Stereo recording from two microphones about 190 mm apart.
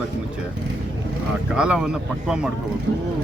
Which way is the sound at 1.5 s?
5° right (ahead or behind).